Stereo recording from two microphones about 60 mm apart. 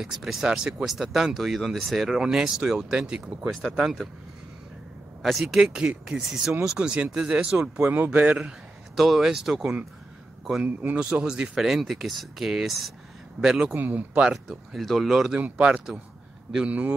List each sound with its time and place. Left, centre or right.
0.0 s speech: centre
5.2 s speech: centre
5.6 s speech: centre
7.8 s a man's voice: right
8.5 s speech: centre
10.6 s a man's voice: right
11.0 s speech: centre
11.6 s speech: centre
13.7 s a man's voice: right
14.1 s speech: centre
14.7 s speech: centre
15.3 s speech: right
16.5 s a man's voice: right